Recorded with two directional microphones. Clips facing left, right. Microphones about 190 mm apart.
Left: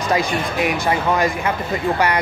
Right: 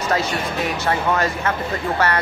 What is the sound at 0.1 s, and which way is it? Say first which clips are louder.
Speech: left 3 dB; 10° left (ahead or behind).